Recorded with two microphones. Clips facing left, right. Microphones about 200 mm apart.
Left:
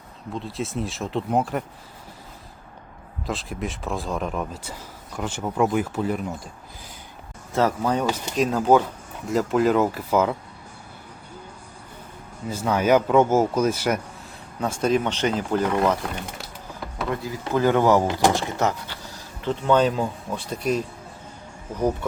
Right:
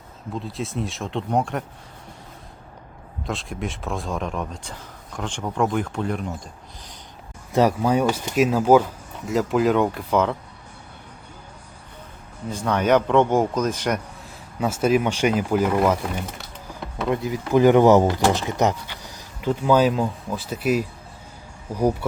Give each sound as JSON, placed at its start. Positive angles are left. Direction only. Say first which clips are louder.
{"t": 0.3, "sound": "speech", "louder": "even", "side_deg": 0}
{"t": 3.2, "sound": "speech", "louder": "even", "side_deg": 0}
{"t": 7.5, "sound": "speech", "louder": "right 3 dB", "side_deg": -10}
{"t": 12.5, "sound": "speech", "louder": "even", "side_deg": 5}
{"t": 14.6, "sound": "speech", "louder": "right 2 dB", "side_deg": -5}
{"t": 17.1, "sound": "speech", "louder": "right 5 dB", "side_deg": -20}